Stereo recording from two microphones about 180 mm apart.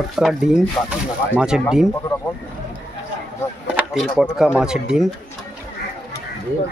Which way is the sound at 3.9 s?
Centre (ahead or behind).